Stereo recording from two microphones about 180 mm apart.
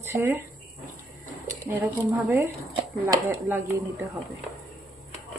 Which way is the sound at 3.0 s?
15° right (ahead or behind).